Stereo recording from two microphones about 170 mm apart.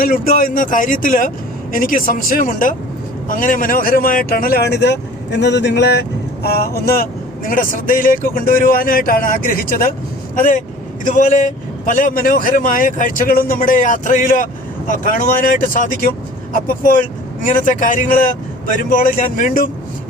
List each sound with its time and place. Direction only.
0.0 s speech: 55° left (ahead or behind)